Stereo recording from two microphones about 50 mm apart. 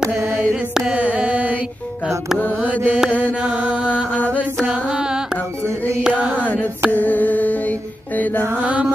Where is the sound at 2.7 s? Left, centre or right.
Left.